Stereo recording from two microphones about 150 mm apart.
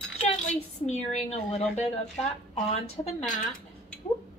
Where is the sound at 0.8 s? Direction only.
50° left (ahead or behind).